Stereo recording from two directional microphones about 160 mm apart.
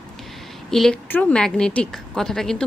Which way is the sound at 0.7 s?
5° left (ahead or behind).